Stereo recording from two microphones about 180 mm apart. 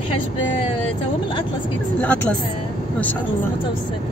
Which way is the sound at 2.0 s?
10° left (ahead or behind).